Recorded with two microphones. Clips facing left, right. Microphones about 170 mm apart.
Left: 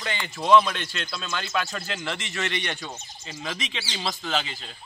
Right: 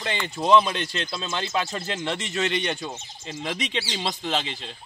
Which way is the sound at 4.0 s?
25° right (ahead or behind).